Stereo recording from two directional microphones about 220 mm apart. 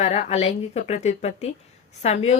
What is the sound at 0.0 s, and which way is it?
A woman's voice, 30° left (ahead or behind).